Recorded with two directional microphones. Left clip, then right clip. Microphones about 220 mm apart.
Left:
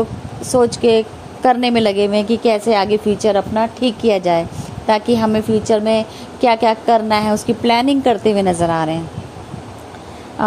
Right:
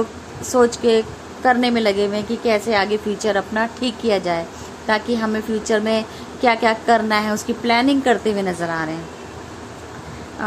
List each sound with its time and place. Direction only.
0.5 s a woman's voice: 20° left (ahead or behind)